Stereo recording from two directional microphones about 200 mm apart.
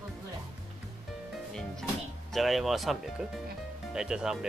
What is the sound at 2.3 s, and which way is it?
Speech, centre (ahead or behind).